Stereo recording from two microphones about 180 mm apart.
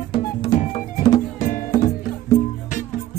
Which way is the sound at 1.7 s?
20° left (ahead or behind).